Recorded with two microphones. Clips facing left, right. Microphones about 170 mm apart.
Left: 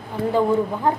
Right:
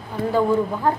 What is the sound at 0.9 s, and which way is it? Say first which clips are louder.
Speech: even; 20° left (ahead or behind).